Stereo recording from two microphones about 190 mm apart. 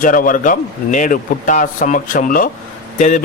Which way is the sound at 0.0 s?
45° left (ahead or behind).